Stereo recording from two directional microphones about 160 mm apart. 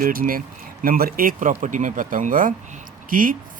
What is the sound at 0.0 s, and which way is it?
Speech, 60° right (ahead or behind).